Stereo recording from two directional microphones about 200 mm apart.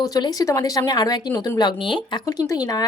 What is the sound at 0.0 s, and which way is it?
A woman's voice, 20° left (ahead or behind).